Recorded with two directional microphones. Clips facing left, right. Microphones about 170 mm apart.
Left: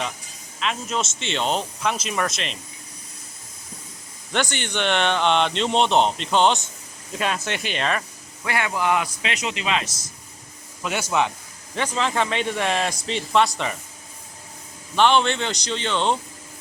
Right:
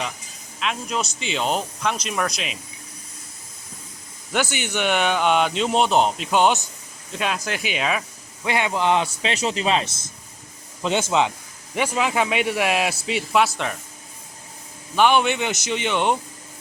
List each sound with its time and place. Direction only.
0.6 s speech: centre (ahead or behind)
4.3 s speech: 5° right (ahead or behind)
8.4 s a man's voice: 20° right (ahead or behind)
11.7 s speech: 10° right (ahead or behind)
14.9 s speech: 10° right (ahead or behind)